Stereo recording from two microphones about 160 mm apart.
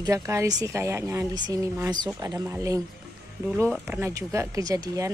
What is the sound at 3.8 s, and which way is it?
Speech, 15° right (ahead or behind).